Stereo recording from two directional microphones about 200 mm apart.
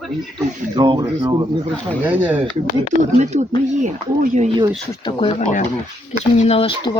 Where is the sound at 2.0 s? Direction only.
10° right (ahead or behind).